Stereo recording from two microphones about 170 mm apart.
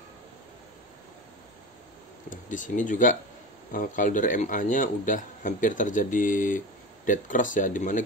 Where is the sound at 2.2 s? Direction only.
50° left (ahead or behind).